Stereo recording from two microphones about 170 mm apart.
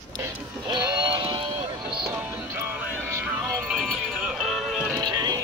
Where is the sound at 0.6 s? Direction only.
30° right (ahead or behind).